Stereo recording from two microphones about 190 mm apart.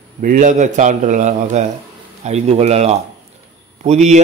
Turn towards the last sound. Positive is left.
turn(degrees=-35)  # may be behind; listen again after turning